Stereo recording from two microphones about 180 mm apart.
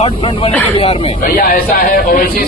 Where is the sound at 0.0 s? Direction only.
30° left (ahead or behind).